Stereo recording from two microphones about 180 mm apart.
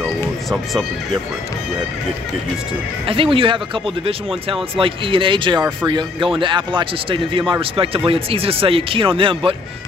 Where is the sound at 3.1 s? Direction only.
30° right (ahead or behind).